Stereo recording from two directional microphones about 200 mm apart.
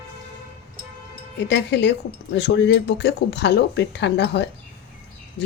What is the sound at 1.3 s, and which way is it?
Speech, 60° left (ahead or behind).